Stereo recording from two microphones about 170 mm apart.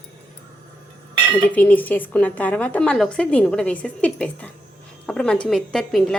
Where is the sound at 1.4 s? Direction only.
10° left (ahead or behind).